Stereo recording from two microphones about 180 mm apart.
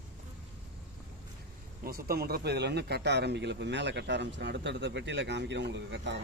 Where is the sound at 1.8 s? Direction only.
55° right (ahead or behind); by 6.2 s 80° right.